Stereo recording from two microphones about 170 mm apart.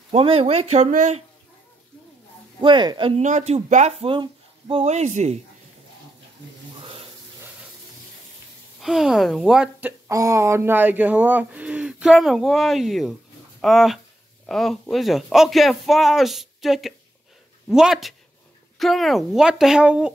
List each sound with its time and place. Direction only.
0.1 s speech: 35° right (ahead or behind)
2.6 s speech: 25° right (ahead or behind)
3.2 s speech: 45° right (ahead or behind)
4.1 s speech: 30° right (ahead or behind)
6.8 s a sound: 30° right (ahead or behind)
8.8 s speech: centre (ahead or behind)